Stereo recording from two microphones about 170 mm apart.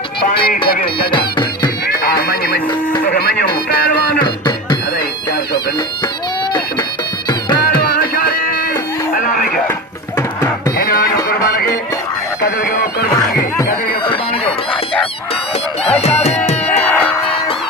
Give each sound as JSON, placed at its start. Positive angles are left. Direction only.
{"t": 0.7, "sound": "music", "side_deg": 60}
{"t": 2.3, "sound": "music", "side_deg": 60}
{"t": 4.2, "sound": "music", "side_deg": 25}
{"t": 7.8, "sound": "music", "side_deg": 60}
{"t": 9.1, "sound": "radio", "side_deg": 55}
{"t": 10.8, "sound": "music", "side_deg": 60}
{"t": 14.1, "sound": "chicken", "side_deg": 30}
{"t": 15.8, "sound": "music", "side_deg": 40}
{"t": 16.7, "sound": "music", "side_deg": 10}